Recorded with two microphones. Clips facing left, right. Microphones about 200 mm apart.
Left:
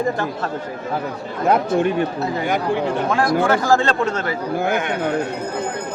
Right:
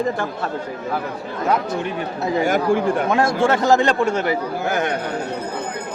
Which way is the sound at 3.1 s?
25° right (ahead or behind).